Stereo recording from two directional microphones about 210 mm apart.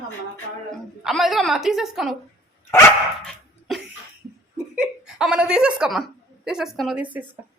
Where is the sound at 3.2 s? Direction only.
Centre (ahead or behind).